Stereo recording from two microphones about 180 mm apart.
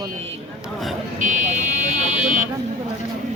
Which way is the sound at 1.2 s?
45° right (ahead or behind).